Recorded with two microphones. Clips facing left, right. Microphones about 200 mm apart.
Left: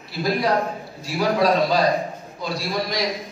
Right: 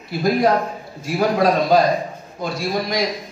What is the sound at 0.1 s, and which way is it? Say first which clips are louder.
A man's voice: right 4 dB; 50° right (ahead or behind).